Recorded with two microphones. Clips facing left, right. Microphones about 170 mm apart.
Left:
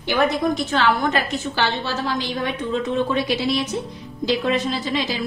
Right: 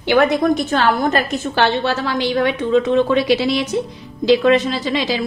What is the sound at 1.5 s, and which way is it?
A woman's voice, 65° right (ahead or behind).